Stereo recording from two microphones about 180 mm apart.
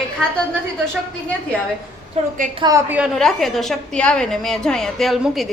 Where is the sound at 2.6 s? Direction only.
15° right (ahead or behind); by 5.5 s centre (ahead or behind).